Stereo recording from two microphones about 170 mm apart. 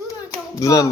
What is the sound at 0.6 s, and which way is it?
Speech, 20° left (ahead or behind).